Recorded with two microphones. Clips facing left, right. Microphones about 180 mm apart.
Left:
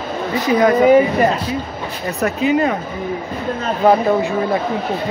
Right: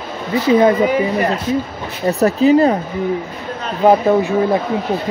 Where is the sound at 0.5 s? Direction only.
25° right (ahead or behind).